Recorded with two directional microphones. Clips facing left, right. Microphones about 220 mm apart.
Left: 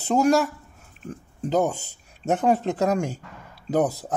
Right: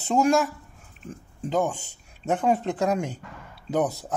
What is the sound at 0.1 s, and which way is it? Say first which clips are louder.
Speech: left 2 dB; 35° left (ahead or behind).